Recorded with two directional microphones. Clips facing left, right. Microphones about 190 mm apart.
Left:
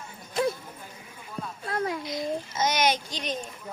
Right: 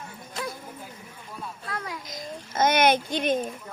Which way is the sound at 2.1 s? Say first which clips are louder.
Left 7 dB; 55° right (ahead or behind).